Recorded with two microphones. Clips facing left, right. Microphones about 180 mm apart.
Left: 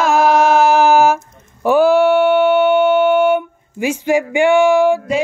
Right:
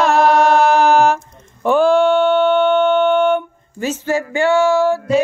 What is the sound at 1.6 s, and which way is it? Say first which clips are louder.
Music: left 1 dB; 5° left (ahead or behind).